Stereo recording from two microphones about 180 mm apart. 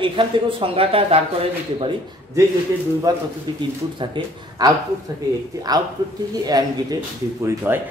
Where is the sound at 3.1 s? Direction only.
20° right (ahead or behind).